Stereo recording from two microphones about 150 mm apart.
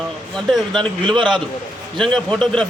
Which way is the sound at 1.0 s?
30° right (ahead or behind).